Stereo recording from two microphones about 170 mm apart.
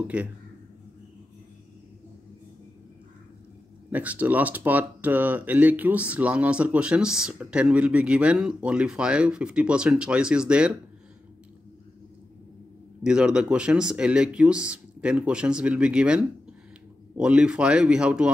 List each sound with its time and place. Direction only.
0.0 s speech: 10° right (ahead or behind)
3.9 s speech: 10° right (ahead or behind)
13.0 s speech: 5° right (ahead or behind)